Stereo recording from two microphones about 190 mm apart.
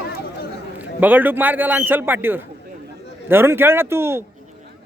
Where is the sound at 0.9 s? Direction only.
10° right (ahead or behind).